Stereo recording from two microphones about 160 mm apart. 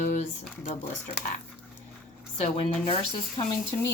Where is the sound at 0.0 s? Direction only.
45° left (ahead or behind).